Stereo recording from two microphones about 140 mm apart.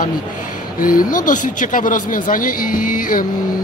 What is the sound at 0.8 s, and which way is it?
Speech, 80° left.